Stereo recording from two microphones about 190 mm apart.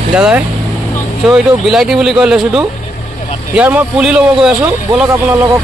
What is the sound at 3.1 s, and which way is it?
Vehicle, 40° left (ahead or behind).